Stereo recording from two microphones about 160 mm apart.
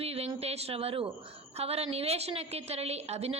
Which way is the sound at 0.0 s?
40° right (ahead or behind).